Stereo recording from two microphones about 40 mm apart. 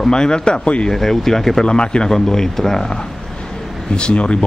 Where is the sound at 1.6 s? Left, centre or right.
Left.